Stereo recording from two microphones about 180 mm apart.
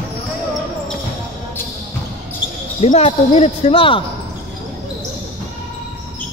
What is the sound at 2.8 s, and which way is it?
Speech, 35° left (ahead or behind).